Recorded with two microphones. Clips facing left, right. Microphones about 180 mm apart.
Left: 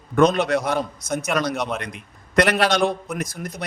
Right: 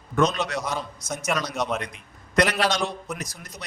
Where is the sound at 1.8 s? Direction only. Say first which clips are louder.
Left 3 dB; 60° left (ahead or behind).